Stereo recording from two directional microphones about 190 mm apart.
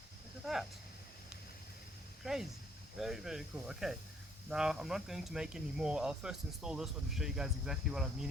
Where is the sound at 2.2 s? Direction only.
Centre (ahead or behind).